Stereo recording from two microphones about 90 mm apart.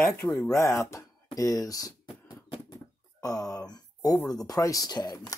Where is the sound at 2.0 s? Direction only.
60° left (ahead or behind).